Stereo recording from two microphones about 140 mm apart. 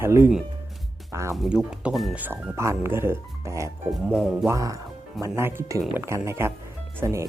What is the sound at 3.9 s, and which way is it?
Speech, 5° right (ahead or behind).